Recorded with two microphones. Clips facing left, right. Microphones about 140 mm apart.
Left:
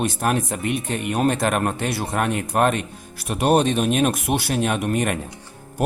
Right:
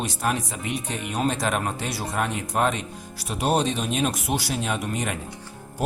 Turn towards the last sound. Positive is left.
turn(degrees=60)  # may be behind; listen again after turning